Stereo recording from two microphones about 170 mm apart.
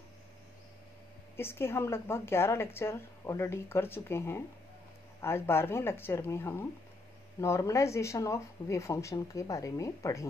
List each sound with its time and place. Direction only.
1.3 s speech: 15° left (ahead or behind)